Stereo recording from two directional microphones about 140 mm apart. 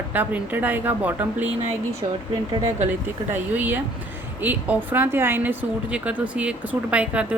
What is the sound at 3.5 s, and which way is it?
A woman's voice, 10° right (ahead or behind).